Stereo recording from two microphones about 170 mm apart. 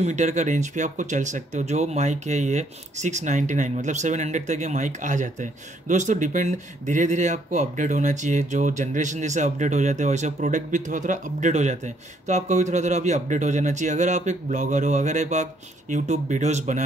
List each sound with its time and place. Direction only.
0.0 s speech: 45° right (ahead or behind)